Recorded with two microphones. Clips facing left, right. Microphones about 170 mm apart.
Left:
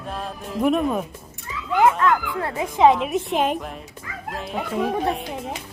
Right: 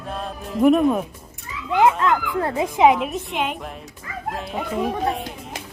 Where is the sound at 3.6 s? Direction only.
Centre (ahead or behind).